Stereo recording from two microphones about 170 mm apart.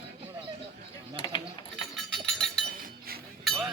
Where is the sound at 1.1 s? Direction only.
30° left (ahead or behind).